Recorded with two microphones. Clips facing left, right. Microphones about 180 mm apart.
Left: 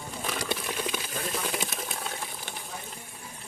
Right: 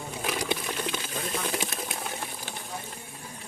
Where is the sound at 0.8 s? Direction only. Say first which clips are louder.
Even; 5° left (ahead or behind).